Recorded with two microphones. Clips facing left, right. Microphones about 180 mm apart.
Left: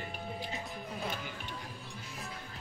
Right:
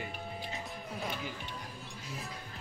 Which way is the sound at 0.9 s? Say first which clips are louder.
Right 1 dB; centre (ahead or behind).